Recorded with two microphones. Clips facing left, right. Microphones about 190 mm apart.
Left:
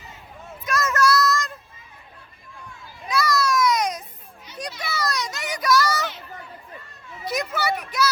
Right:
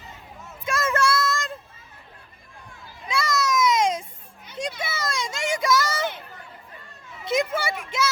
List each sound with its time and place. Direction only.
0.6 s child singing: 30° right (ahead or behind)
3.1 s a sound: 25° right (ahead or behind)
4.8 s children playing: 25° right (ahead or behind)
7.3 s children playing: 25° right (ahead or behind)